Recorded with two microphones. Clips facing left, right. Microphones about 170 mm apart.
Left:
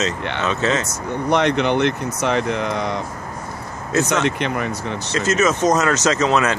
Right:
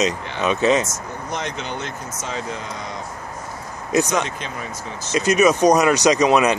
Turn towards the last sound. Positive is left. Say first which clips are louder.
# right 2 dB
turn(degrees=-15)  # may be behind; listen again after turning